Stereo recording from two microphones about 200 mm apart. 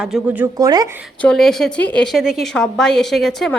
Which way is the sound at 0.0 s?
5° right (ahead or behind).